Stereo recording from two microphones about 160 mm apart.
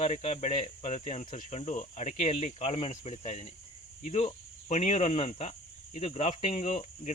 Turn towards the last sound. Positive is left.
turn(degrees=45)  # may be behind; listen again after turning